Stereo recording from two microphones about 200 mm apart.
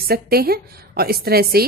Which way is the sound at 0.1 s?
50° right (ahead or behind).